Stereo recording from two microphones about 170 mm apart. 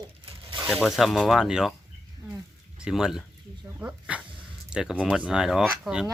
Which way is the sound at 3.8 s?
10° right (ahead or behind).